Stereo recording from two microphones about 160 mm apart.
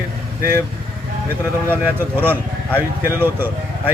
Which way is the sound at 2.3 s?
10° left (ahead or behind).